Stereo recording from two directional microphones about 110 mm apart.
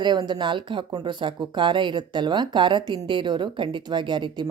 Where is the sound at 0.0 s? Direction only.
40° right (ahead or behind).